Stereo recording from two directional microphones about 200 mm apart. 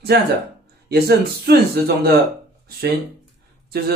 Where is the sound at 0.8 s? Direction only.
50° right (ahead or behind).